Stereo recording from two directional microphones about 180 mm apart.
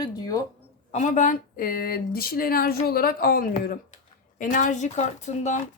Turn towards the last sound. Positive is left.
turn(degrees=40)  # may be behind; listen again after turning